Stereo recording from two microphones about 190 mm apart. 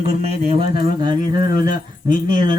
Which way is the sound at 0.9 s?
20° right (ahead or behind).